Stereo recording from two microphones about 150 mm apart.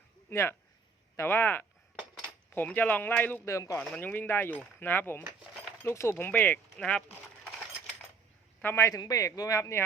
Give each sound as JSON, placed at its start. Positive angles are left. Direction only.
{"t": 0.3, "sound": "speech", "side_deg": 15}
{"t": 3.8, "sound": "speech", "side_deg": 10}
{"t": 8.6, "sound": "speech", "side_deg": 15}